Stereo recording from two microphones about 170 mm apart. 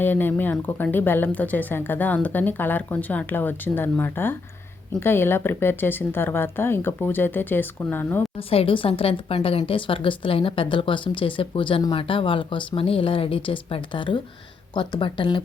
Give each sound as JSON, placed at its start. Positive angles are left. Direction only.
{"t": 0.0, "sound": "speech", "side_deg": 10}
{"t": 8.4, "sound": "a woman's voice", "side_deg": 35}